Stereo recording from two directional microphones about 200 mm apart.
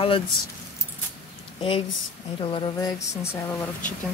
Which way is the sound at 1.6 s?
25° left (ahead or behind).